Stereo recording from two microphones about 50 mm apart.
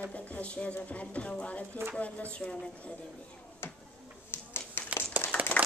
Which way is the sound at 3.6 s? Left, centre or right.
Left.